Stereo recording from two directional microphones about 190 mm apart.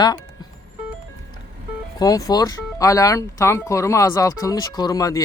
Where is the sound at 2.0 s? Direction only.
20° left (ahead or behind).